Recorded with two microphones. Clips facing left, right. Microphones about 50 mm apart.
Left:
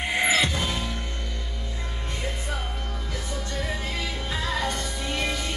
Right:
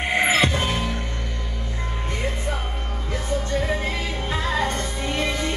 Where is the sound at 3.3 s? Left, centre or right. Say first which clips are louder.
Right 8 dB; right.